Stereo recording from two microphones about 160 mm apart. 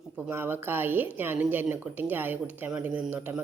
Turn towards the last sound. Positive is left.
turn(degrees=-10)  # may be behind; listen again after turning